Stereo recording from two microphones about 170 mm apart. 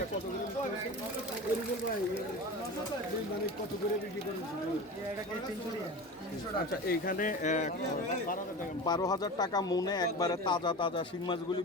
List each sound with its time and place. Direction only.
6.8 s speech: 55° left (ahead or behind)
8.8 s speech: 25° left (ahead or behind)